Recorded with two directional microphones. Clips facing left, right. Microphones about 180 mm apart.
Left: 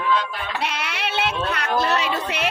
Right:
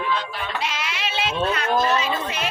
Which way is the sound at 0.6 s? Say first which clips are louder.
Left 1 dB; 60° left (ahead or behind).